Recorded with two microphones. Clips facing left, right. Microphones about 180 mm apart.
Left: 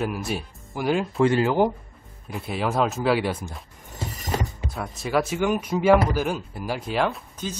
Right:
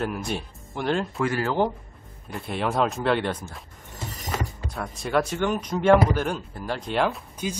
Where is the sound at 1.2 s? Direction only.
25° left (ahead or behind).